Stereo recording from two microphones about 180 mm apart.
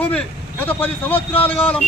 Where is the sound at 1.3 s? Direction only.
30° left (ahead or behind).